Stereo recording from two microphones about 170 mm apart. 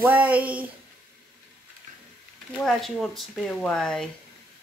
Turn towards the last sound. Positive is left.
turn(degrees=0)  # may be behind; listen again after turning